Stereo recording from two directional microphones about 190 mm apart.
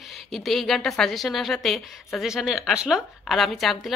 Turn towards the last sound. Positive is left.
turn(degrees=0)  # may be behind; listen again after turning